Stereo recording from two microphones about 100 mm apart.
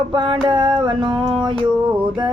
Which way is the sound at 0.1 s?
50° right (ahead or behind).